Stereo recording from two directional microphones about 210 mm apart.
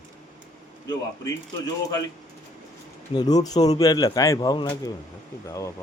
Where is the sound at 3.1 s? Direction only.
20° left (ahead or behind).